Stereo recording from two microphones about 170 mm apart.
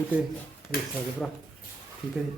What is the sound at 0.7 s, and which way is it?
Speech, 65° left (ahead or behind).